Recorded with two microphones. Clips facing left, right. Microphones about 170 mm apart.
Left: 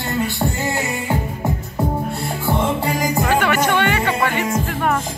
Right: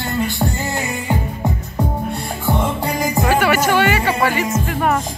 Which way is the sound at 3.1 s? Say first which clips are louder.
Right 3 dB; 5° right (ahead or behind).